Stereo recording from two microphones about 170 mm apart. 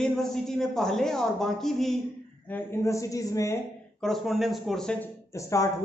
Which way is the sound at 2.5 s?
15° left (ahead or behind).